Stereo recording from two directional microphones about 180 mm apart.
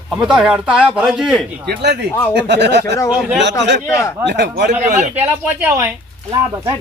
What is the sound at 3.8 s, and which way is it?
Speech, 15° left (ahead or behind).